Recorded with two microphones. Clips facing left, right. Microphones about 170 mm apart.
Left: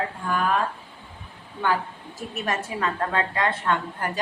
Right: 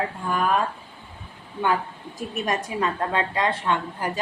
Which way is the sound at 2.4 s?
15° right (ahead or behind).